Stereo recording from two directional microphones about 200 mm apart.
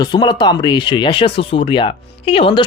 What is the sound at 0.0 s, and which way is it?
Speech, 20° left (ahead or behind).